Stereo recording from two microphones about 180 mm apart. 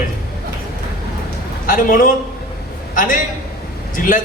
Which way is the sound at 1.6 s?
50° left (ahead or behind).